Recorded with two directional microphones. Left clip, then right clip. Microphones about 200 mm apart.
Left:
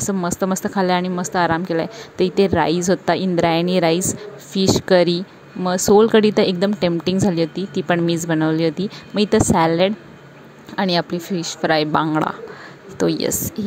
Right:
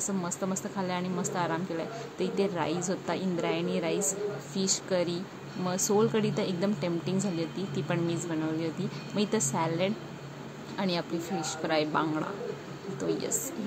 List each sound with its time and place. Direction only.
0.0 s speech: 45° left (ahead or behind)